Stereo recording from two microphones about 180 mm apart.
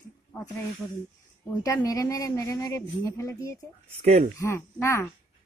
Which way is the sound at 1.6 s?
20° left (ahead or behind).